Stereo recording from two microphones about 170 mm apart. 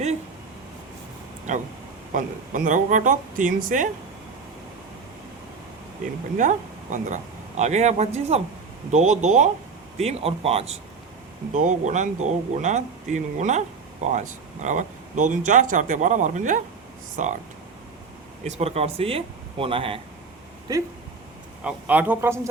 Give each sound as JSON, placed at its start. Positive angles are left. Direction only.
{"t": 2.1, "sound": "speech", "side_deg": -50}
{"t": 6.3, "sound": "speech", "side_deg": -50}
{"t": 11.5, "sound": "speech", "side_deg": -45}
{"t": 18.4, "sound": "speech", "side_deg": -40}
{"t": 20.7, "sound": "speech", "side_deg": -20}
{"t": 21.6, "sound": "a man's voice", "side_deg": -10}